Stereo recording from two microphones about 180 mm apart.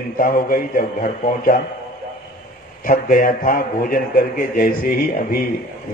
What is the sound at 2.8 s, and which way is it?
A man's voice, 50° left (ahead or behind).